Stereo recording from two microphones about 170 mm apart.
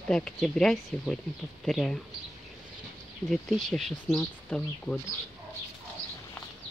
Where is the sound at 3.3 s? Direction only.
Centre (ahead or behind).